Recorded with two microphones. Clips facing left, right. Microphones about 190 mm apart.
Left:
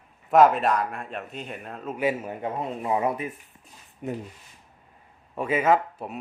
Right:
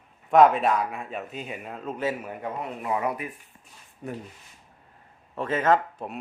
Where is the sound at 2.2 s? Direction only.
25° left (ahead or behind).